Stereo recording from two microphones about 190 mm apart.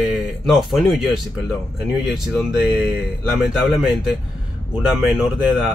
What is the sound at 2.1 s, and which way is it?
Speech, centre (ahead or behind).